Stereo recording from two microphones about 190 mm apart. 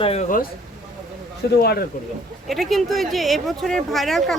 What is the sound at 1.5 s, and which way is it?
Speech, 55° left (ahead or behind).